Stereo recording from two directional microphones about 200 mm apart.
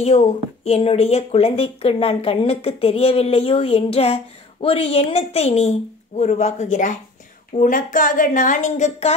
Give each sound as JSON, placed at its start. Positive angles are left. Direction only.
{"t": 0.0, "sound": "a woman's voice", "side_deg": 30}